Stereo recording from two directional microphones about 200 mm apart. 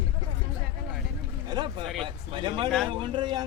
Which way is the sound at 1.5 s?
20° right (ahead or behind).